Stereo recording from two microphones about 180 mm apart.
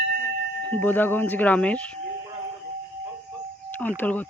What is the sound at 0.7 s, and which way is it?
Speech, 10° left (ahead or behind).